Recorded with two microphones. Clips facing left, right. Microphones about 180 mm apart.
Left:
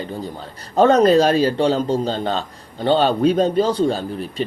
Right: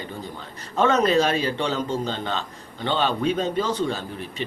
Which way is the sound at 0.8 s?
35° left (ahead or behind).